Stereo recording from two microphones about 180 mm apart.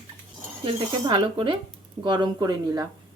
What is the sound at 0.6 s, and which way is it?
Speech, 25° right (ahead or behind).